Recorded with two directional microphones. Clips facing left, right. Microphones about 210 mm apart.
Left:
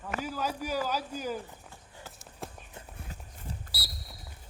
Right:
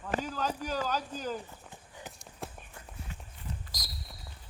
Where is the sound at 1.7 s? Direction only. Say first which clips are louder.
Right 2 dB; 20° right (ahead or behind).